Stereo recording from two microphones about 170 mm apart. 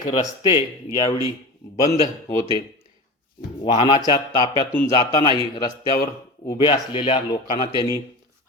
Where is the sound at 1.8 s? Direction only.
20° left (ahead or behind).